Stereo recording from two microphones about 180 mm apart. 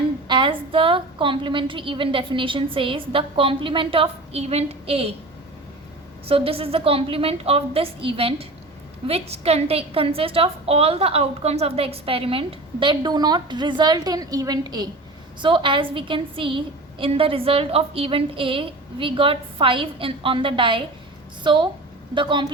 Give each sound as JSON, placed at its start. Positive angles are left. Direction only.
{"t": 0.3, "sound": "a woman's voice", "side_deg": -25}
{"t": 6.2, "sound": "a woman's voice", "side_deg": -30}